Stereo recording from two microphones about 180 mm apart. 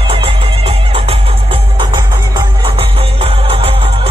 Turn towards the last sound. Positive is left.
turn(degrees=-30)  # may be behind; listen again after turning